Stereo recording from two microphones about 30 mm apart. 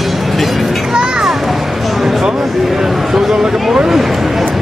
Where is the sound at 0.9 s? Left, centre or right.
Right.